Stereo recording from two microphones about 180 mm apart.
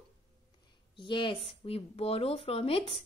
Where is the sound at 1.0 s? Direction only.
30° left (ahead or behind).